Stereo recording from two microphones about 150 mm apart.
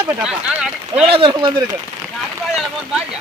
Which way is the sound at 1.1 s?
35° right (ahead or behind).